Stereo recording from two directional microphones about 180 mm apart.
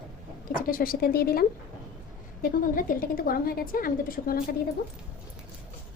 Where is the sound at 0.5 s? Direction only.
55° left (ahead or behind).